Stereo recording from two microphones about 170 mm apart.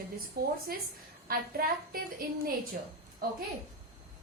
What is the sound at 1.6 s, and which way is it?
Speech, 60° right (ahead or behind).